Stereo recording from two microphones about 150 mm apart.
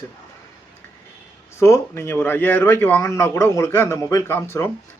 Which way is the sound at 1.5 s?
20° left (ahead or behind).